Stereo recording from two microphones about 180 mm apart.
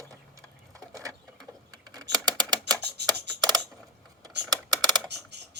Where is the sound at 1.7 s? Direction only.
20° right (ahead or behind).